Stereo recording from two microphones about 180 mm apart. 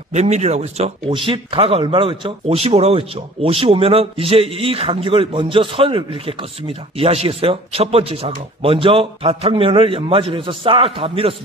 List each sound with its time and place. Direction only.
0.1 s speech: 40° right (ahead or behind)